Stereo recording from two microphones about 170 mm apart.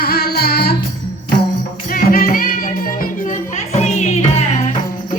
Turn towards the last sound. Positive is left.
turn(degrees=40)  # may be behind; listen again after turning